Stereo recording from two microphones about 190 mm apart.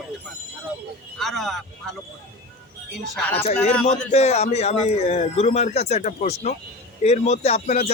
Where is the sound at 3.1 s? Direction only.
10° left (ahead or behind).